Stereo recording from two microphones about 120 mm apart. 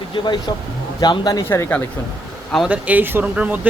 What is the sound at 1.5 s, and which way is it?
Speech, 20° left (ahead or behind).